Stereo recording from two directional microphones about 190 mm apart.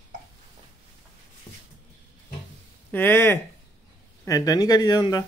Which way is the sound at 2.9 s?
10° left (ahead or behind).